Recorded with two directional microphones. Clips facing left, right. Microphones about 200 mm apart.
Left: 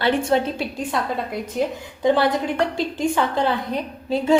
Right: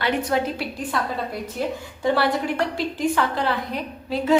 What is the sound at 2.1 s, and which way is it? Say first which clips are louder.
A woman's voice: left 2 dB; 25° left (ahead or behind).